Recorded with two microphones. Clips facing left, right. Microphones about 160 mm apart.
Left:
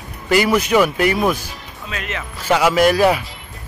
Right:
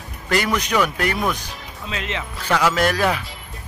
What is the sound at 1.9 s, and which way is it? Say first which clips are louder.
Speech: even; 25° right (ahead or behind).